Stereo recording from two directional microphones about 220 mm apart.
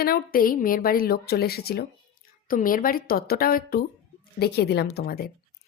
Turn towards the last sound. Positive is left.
turn(degrees=45)  # may be behind; listen again after turning